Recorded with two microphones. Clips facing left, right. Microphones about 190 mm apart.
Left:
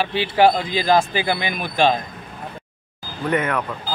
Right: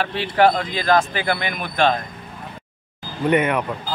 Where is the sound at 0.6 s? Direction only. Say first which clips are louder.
Left 1 dB; 10° left (ahead or behind).